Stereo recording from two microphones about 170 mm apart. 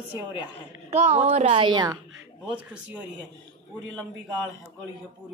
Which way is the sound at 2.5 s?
10° right (ahead or behind).